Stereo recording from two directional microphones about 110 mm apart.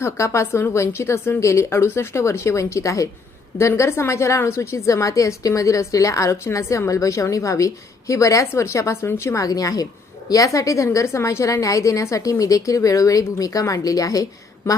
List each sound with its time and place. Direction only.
0.0 s a woman's voice: 25° left (ahead or behind)